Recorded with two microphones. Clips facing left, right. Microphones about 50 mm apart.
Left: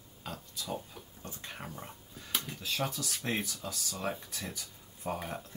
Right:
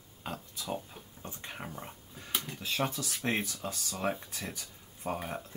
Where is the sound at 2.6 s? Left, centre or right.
Right.